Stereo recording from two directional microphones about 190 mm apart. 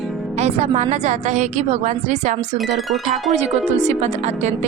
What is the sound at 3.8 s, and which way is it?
Speech, 35° right (ahead or behind).